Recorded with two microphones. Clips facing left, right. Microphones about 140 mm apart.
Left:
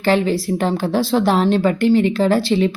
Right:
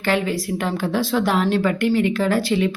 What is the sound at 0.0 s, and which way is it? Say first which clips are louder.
A woman's voice: left 5 dB; 30° left (ahead or behind).